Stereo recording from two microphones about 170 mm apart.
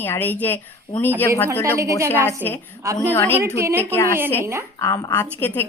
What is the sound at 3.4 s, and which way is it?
A woman's voice, 15° right (ahead or behind).